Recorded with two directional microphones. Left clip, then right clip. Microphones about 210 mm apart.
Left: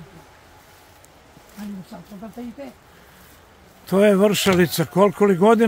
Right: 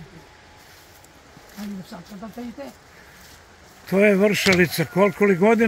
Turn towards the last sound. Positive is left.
turn(degrees=20)  # may be behind; listen again after turning